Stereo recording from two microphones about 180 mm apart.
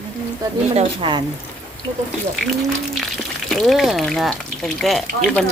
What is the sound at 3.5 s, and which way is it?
Speech, centre (ahead or behind).